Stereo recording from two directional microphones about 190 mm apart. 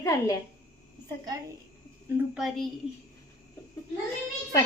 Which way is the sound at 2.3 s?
Centre (ahead or behind).